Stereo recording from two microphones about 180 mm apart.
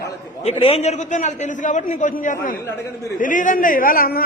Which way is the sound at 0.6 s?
35° left (ahead or behind).